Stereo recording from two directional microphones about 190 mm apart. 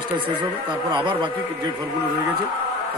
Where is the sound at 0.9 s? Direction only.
25° right (ahead or behind).